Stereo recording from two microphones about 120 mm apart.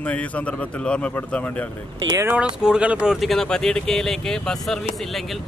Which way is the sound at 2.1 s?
25° right (ahead or behind).